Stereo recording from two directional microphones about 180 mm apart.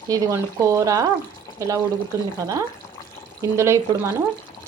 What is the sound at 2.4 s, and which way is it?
Speech, 20° right (ahead or behind).